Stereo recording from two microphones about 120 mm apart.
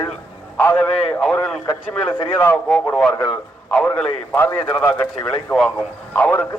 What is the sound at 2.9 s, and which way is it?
A man's voice, 10° left (ahead or behind).